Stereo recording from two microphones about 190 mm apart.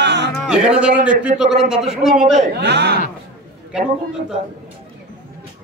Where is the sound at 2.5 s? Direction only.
65° right (ahead or behind).